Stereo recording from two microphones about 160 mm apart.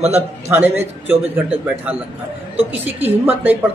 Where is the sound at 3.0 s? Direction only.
10° right (ahead or behind).